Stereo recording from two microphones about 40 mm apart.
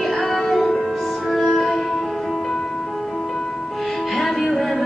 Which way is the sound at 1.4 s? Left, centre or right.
Centre.